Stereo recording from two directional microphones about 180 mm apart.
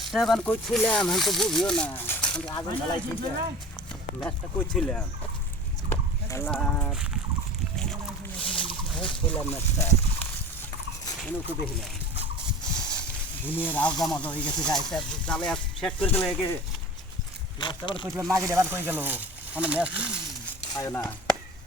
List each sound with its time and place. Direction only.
0.0 s speech: centre (ahead or behind)
2.5 s speech: 25° left (ahead or behind)
4.2 s speech: 5° left (ahead or behind)
6.9 s speech: 5° right (ahead or behind)
8.4 s a sound: 30° left (ahead or behind)
9.0 s speech: 5° left (ahead or behind)
12.9 s speech: 10° left (ahead or behind)
17.6 s speech: 25° left (ahead or behind)
18.3 s speech: 20° right (ahead or behind)
20.7 s speech: 20° left (ahead or behind)